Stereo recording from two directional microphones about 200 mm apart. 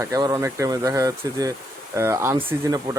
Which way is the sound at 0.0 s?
15° right (ahead or behind).